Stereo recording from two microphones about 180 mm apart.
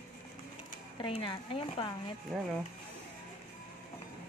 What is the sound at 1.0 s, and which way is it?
Speech, 30° left (ahead or behind).